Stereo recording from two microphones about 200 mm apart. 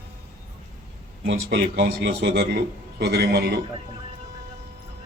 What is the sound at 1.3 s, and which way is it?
A man's voice, 55° right (ahead or behind).